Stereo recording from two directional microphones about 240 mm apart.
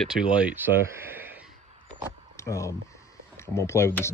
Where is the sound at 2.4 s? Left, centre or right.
Centre.